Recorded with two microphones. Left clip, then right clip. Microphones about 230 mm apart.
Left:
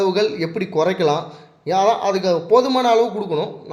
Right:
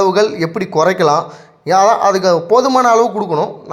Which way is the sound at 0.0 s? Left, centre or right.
Centre.